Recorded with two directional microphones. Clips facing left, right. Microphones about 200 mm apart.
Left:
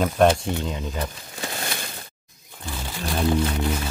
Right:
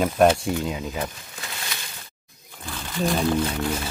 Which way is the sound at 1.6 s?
50° left (ahead or behind).